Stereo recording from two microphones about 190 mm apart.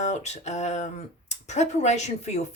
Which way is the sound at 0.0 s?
40° left (ahead or behind).